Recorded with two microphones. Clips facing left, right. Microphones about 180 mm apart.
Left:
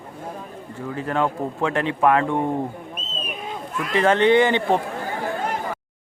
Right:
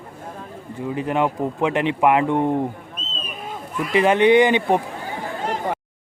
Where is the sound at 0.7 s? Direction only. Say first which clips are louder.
Right 2 dB; 15° right (ahead or behind).